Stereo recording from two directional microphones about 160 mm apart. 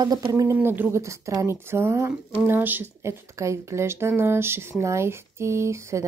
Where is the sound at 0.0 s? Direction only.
25° right (ahead or behind).